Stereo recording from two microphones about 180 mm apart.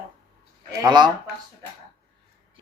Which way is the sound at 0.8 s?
25° right (ahead or behind).